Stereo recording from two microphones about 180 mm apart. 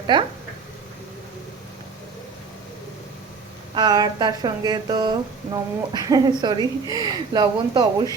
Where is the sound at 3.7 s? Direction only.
25° right (ahead or behind).